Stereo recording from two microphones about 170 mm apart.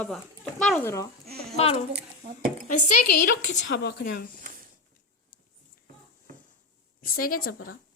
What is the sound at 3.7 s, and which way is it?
Speech, 75° left (ahead or behind).